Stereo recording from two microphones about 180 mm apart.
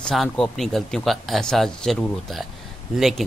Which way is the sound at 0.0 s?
Centre (ahead or behind).